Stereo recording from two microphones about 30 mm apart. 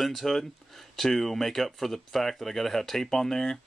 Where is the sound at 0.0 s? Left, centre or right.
Centre.